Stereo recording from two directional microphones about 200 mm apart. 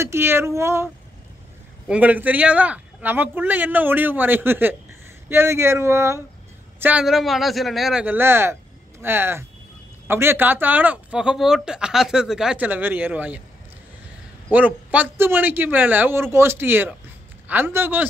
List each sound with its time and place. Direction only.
0.0 s speech: 10° right (ahead or behind)
1.9 s a man's voice: 5° right (ahead or behind)
14.5 s speech: 5° right (ahead or behind)